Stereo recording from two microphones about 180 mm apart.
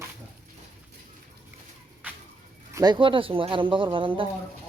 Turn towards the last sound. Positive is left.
turn(degrees=-30)  # may be behind; listen again after turning